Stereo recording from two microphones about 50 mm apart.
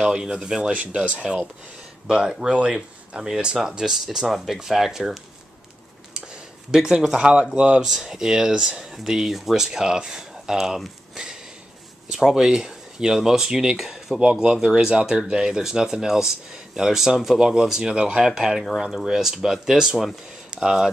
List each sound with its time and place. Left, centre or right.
0.0 s speech: centre
3.3 s speech: centre
6.1 s a sound: centre
7.2 s speech: centre
7.9 s speech: centre
12.1 s speech: centre